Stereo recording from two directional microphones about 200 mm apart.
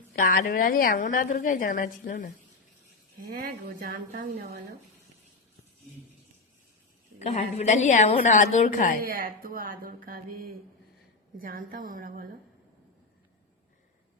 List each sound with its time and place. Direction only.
0.1 s a woman's voice: 45° left (ahead or behind)
3.2 s speech: 45° right (ahead or behind)
7.2 s a woman's voice: 35° left (ahead or behind)
9.0 s speech: 45° right (ahead or behind)